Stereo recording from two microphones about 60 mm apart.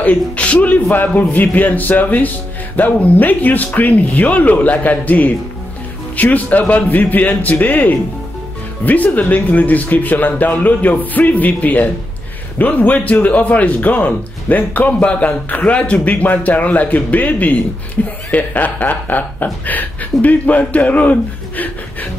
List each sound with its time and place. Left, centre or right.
0.0 s a man's voice: left